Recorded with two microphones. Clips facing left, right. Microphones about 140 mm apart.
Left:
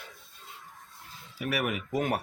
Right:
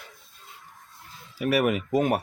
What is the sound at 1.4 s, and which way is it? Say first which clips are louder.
Speech: right 8 dB; 30° right (ahead or behind).